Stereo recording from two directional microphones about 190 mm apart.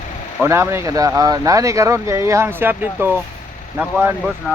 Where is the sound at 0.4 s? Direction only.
15° right (ahead or behind).